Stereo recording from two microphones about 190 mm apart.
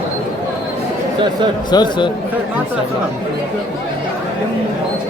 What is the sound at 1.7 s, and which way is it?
Speech, 20° left (ahead or behind).